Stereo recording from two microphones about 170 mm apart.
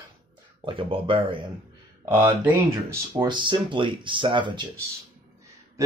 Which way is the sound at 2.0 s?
15° right (ahead or behind).